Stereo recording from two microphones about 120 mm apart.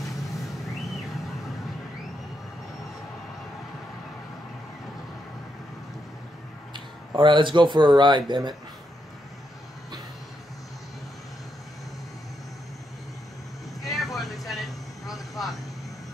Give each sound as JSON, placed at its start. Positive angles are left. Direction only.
{"t": 0.0, "sound": "vehicle", "side_deg": 0}
{"t": 6.7, "sound": "speech", "side_deg": -40}
{"t": 13.7, "sound": "vehicle", "side_deg": 0}